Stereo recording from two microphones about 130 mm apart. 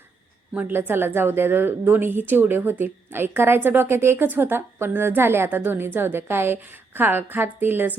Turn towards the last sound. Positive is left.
turn(degrees=-15)  # may be behind; listen again after turning